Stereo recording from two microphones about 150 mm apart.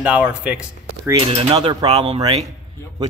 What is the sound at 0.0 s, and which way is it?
Speech, 10° right (ahead or behind).